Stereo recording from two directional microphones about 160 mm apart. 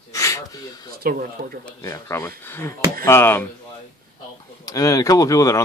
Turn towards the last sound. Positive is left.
turn(degrees=20)  # may be behind; listen again after turning